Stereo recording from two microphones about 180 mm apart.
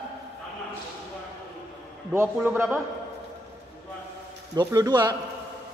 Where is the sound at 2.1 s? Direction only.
10° right (ahead or behind).